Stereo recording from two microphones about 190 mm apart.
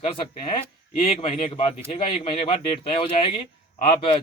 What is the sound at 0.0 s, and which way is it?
A man's voice, 25° left (ahead or behind).